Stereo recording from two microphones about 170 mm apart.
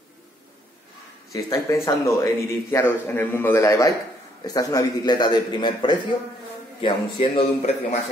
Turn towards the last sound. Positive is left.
turn(degrees=40)  # may be behind; listen again after turning